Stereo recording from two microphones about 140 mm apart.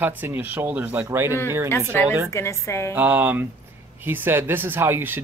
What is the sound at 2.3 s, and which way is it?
Speech, 20° left (ahead or behind).